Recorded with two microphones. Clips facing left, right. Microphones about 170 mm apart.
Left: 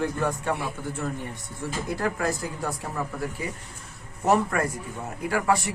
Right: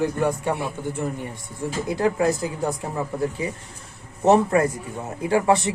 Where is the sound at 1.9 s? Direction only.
20° right (ahead or behind).